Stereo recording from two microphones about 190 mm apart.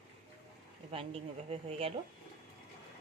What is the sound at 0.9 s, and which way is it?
Speech, 30° right (ahead or behind).